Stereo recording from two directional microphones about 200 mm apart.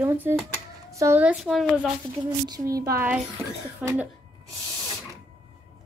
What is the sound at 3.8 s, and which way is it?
Speech, 5° right (ahead or behind).